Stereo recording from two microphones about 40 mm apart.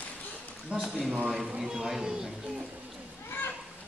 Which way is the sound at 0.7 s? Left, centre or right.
Right.